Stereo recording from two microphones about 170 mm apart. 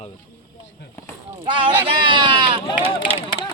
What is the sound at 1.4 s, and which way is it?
Speech, 30° right (ahead or behind).